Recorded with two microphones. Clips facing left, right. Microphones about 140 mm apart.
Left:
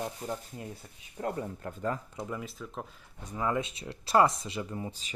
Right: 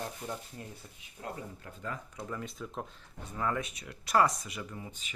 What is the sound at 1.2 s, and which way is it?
Speech, 50° left (ahead or behind).